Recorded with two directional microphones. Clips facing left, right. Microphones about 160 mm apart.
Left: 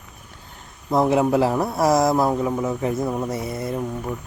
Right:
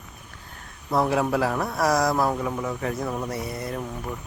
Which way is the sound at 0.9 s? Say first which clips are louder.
Left 4 dB; 20° left (ahead or behind).